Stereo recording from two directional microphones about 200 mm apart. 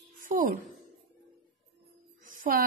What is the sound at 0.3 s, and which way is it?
Speech, 40° right (ahead or behind).